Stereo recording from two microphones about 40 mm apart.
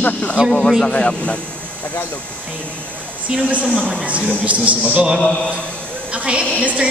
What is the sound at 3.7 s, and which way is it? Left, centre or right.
Speech, left.